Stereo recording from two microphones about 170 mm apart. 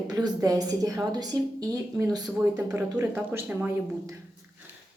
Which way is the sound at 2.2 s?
10° right (ahead or behind).